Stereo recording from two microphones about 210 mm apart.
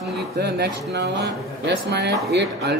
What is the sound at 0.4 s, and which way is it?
Speech, 55° right (ahead or behind).